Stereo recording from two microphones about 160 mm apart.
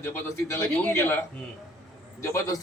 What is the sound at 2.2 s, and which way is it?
Speech, 20° left (ahead or behind).